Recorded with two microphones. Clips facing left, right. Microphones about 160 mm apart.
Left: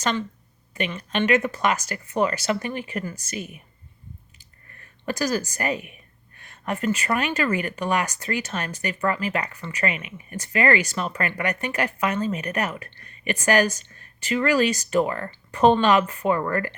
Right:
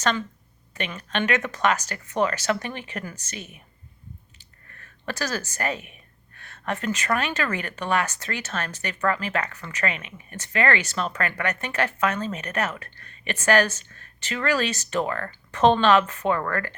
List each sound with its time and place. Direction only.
0.7 s speech: 10° left (ahead or behind)
5.0 s speech: 10° left (ahead or behind)